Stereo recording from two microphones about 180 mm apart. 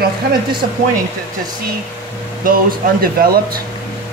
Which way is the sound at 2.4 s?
50° right (ahead or behind).